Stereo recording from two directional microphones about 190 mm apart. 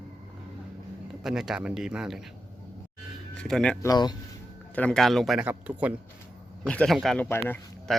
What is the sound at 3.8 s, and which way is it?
Speech, 20° left (ahead or behind).